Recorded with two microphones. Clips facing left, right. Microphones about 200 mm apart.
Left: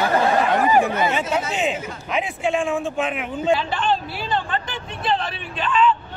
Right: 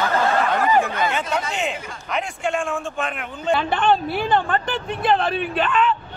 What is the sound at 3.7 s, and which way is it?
Speech, 55° right (ahead or behind).